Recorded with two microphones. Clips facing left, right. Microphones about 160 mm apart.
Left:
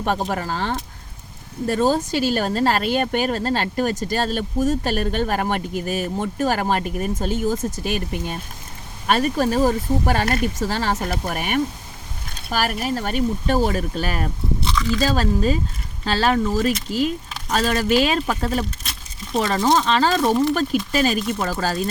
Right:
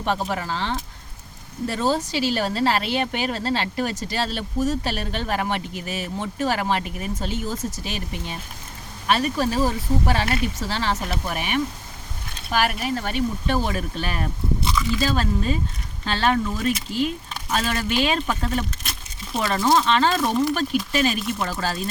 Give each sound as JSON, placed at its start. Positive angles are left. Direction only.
{"t": 0.0, "sound": "speech", "side_deg": 45}
{"t": 14.6, "sound": "biting", "side_deg": -5}
{"t": 15.0, "sound": "speech", "side_deg": 40}
{"t": 18.8, "sound": "a sound", "side_deg": 0}
{"t": 19.4, "sound": "speech", "side_deg": 30}
{"t": 19.7, "sound": "speech", "side_deg": 40}